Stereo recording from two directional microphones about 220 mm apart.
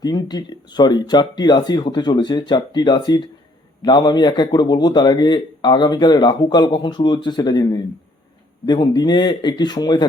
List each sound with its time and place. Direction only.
0.0 s speech: 20° left (ahead or behind)